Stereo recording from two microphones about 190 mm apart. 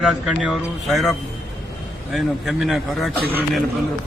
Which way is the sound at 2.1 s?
Centre (ahead or behind).